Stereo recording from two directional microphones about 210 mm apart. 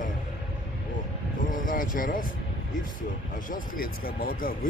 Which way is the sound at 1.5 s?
40° left (ahead or behind).